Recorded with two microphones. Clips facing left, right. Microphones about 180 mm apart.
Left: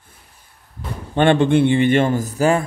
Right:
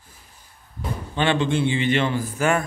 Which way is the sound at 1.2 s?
55° left (ahead or behind).